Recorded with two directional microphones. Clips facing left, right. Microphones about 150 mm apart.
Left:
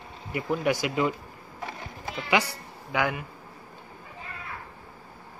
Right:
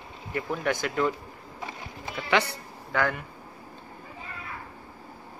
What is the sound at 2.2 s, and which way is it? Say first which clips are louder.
A man's voice: even; 10° left (ahead or behind).